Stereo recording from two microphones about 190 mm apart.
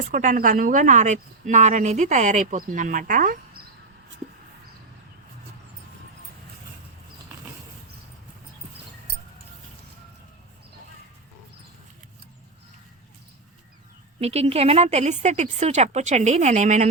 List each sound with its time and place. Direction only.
0.1 s a woman's voice: 45° right (ahead or behind)
14.2 s a woman's voice: 35° right (ahead or behind)